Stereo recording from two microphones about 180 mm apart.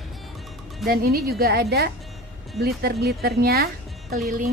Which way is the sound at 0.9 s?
55° right (ahead or behind).